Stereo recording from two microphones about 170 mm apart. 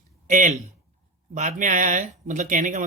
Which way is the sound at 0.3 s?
50° right (ahead or behind).